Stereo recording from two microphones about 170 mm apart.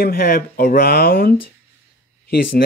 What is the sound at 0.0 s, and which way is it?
Speech, 60° left (ahead or behind).